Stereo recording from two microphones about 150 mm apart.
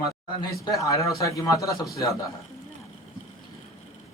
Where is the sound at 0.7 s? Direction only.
20° left (ahead or behind).